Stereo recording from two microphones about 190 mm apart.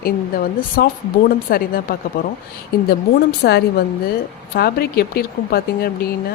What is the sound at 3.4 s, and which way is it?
Speech, 60° left (ahead or behind).